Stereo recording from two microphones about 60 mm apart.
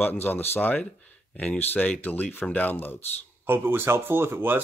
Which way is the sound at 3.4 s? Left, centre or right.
Right.